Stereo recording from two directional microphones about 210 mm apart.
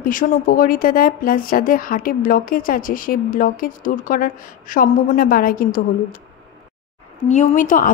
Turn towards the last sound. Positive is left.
turn(degrees=40)  # may be behind; listen again after turning